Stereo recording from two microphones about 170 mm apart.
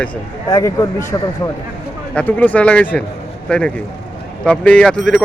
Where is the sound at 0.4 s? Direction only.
20° left (ahead or behind).